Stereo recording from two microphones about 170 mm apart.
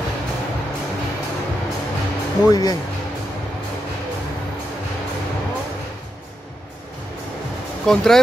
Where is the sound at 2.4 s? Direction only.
20° left (ahead or behind).